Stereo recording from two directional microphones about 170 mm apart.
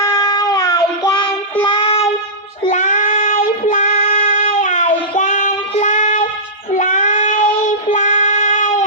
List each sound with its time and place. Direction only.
0.0 s child singing: 20° left (ahead or behind)
2.7 s child singing: 50° left (ahead or behind)